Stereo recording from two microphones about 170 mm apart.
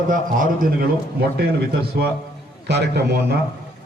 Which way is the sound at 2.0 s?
70° right (ahead or behind).